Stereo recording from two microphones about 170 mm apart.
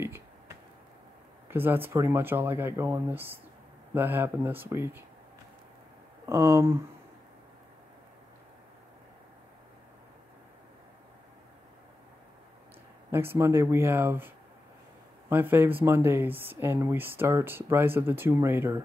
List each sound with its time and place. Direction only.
1.5 s speech: 10° right (ahead or behind)
6.2 s speech: 15° right (ahead or behind)
13.1 s speech: 15° right (ahead or behind)